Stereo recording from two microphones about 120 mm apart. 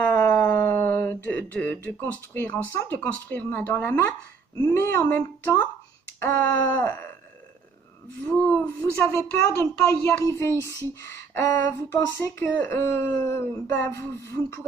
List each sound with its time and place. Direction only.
0.0 s a sound: 10° left (ahead or behind)
2.9 s speech: 15° left (ahead or behind)
6.1 s wail: 15° left (ahead or behind)
8.3 s speech: 10° left (ahead or behind)